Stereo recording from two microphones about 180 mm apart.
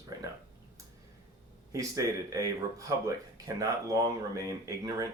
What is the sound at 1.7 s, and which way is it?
Speech, 20° right (ahead or behind).